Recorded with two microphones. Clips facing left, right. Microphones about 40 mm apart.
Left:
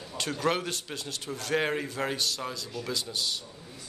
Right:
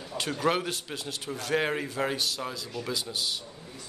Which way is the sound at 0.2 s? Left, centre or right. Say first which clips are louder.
Right 1 dB; centre.